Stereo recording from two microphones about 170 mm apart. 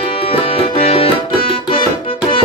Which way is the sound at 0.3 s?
35° left (ahead or behind).